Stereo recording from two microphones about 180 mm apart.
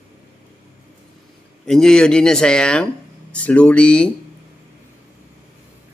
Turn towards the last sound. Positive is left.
turn(degrees=5)  # may be behind; listen again after turning